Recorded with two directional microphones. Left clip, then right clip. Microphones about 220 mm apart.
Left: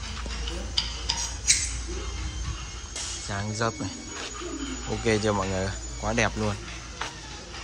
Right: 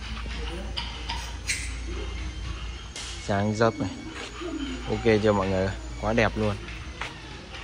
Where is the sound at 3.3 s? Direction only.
Centre (ahead or behind).